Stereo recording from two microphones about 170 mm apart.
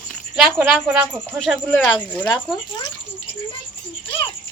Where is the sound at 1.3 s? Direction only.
5° left (ahead or behind).